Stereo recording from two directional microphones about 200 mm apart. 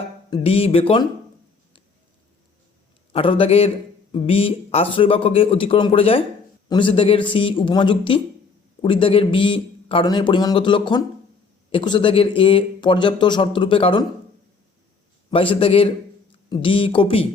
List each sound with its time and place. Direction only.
0.3 s speech: 25° left (ahead or behind)
3.1 s speech: 25° left (ahead or behind)
15.3 s speech: 25° left (ahead or behind)